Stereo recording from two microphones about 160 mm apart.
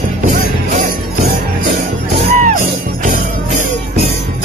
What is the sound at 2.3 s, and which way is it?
Music, 55° right (ahead or behind).